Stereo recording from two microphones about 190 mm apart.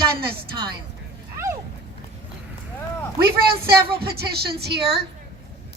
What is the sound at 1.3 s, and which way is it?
Dog, 15° right (ahead or behind).